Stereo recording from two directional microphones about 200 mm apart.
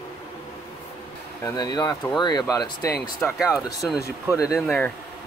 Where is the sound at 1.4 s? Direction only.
20° left (ahead or behind).